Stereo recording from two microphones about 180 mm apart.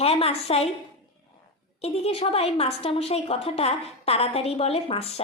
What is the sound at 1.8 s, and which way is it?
A woman's voice, 35° left (ahead or behind).